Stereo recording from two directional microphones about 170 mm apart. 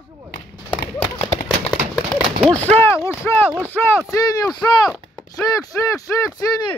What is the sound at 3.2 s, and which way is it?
Speech, 15° left (ahead or behind).